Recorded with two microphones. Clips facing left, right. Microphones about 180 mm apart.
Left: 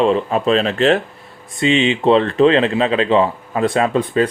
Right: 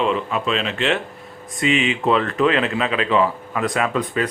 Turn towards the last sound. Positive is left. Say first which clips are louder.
# left 5 dB
turn(degrees=30)  # may be behind; listen again after turning